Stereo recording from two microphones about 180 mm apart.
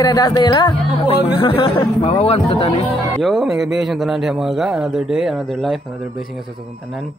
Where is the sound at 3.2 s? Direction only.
Centre (ahead or behind).